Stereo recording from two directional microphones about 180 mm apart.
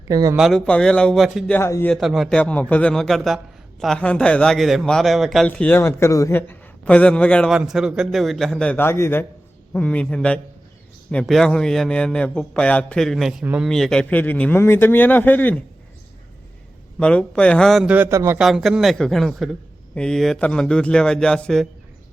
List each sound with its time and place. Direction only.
0.1 s speech: 20° right (ahead or behind)
0.3 s a man's voice: centre (ahead or behind)
1.5 s a man's voice: 10° left (ahead or behind)
2.0 s a man's voice: centre (ahead or behind)
17.0 s a man's voice: 5° left (ahead or behind); by 18.3 s 15° right (ahead or behind)
18.3 s a man's voice: centre (ahead or behind)